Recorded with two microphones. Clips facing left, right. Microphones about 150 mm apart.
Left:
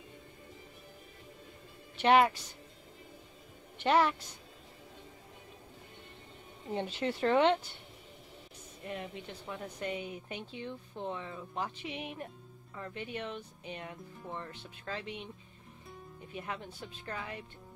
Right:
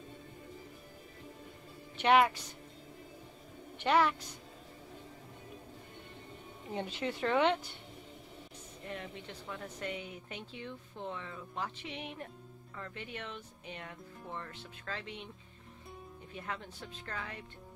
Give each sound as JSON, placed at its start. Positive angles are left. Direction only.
{"t": 2.0, "sound": "a woman's voice", "side_deg": 30}
{"t": 3.7, "sound": "a woman's voice", "side_deg": 30}
{"t": 6.7, "sound": "a woman's voice", "side_deg": 30}
{"t": 8.8, "sound": "a woman's voice", "side_deg": 20}
{"t": 16.3, "sound": "a woman's voice", "side_deg": 15}